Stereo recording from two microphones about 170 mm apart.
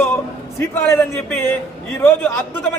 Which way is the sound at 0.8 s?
15° left (ahead or behind).